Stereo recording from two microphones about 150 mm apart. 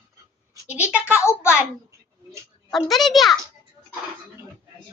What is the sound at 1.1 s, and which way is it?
Speech, 15° left (ahead or behind).